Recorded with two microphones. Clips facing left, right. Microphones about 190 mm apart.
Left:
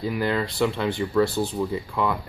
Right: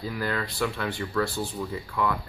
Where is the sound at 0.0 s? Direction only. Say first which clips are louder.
Left 5 dB; 20° left (ahead or behind).